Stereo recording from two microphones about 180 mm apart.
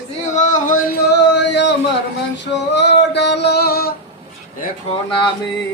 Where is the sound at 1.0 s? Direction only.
70° left (ahead or behind).